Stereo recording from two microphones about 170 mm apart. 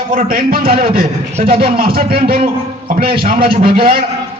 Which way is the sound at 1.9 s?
60° right (ahead or behind).